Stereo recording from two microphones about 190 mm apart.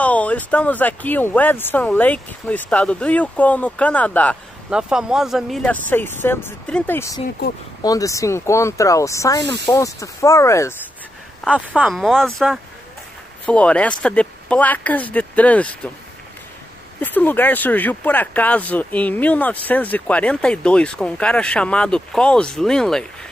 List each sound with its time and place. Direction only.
0.0 s speech: 5° left (ahead or behind)
4.6 s speech: 5° right (ahead or behind); by 10.7 s 15° left (ahead or behind)
11.5 s speech: 5° right (ahead or behind)
17.0 s speech: 10° left (ahead or behind)